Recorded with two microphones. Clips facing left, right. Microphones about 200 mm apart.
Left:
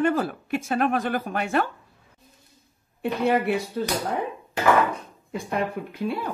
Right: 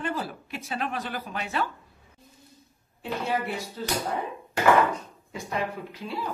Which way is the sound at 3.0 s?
60° left (ahead or behind).